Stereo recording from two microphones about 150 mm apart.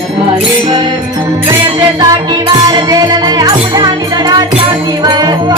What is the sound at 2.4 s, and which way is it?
Music, 30° right (ahead or behind).